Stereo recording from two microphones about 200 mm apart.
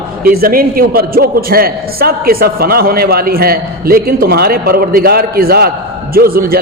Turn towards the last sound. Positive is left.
turn(degrees=-50)  # may be behind; listen again after turning